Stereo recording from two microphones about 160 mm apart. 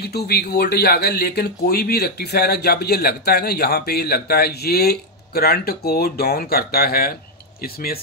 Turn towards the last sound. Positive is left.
turn(degrees=70)  # may be behind; listen again after turning